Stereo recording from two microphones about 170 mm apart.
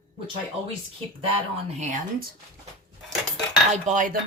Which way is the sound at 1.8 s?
50° right (ahead or behind).